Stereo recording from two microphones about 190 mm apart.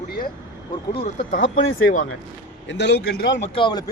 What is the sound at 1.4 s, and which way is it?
Speech, 85° left.